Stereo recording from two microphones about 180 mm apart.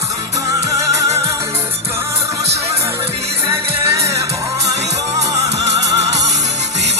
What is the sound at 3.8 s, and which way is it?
Music, 15° right (ahead or behind).